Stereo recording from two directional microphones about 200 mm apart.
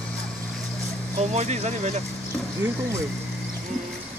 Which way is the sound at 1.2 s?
35° right (ahead or behind).